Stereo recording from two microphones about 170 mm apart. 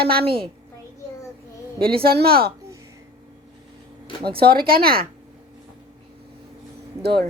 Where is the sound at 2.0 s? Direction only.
65° right (ahead or behind).